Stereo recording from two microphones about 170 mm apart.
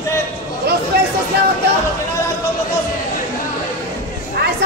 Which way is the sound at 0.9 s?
70° right (ahead or behind).